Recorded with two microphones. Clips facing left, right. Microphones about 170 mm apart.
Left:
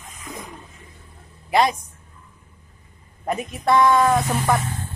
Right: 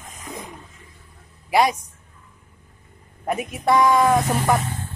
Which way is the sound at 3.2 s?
10° right (ahead or behind).